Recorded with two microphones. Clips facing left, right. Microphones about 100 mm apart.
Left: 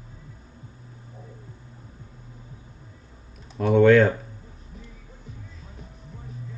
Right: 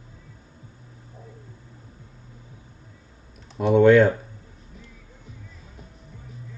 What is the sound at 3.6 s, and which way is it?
Typing, centre (ahead or behind).